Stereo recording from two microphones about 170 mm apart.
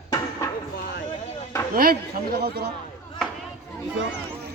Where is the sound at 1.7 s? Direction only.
60° right (ahead or behind).